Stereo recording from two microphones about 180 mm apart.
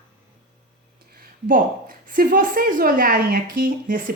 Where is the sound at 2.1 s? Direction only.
50° right (ahead or behind).